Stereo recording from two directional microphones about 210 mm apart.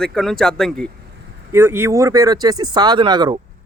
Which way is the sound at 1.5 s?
10° right (ahead or behind).